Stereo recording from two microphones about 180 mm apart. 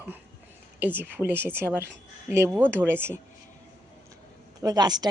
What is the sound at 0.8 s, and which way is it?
Speech, 10° right (ahead or behind).